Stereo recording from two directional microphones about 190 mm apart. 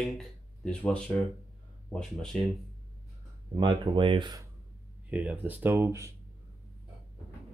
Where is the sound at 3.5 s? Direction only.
25° right (ahead or behind).